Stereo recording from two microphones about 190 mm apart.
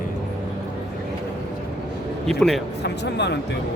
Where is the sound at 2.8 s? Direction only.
65° left (ahead or behind).